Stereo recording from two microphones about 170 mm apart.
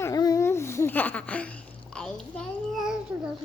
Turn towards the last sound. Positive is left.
turn(degrees=-5)  # may be behind; listen again after turning